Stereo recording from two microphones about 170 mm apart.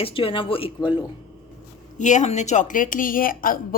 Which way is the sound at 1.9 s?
45° left (ahead or behind).